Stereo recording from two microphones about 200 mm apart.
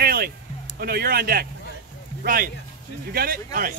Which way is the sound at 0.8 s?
50° right (ahead or behind).